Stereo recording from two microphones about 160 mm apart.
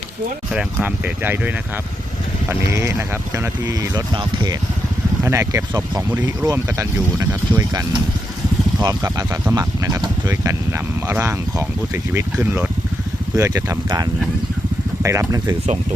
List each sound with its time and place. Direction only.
0.5 s speech: 5° right (ahead or behind); by 4.5 s 25° right (ahead or behind)
5.2 s speech: 15° right (ahead or behind)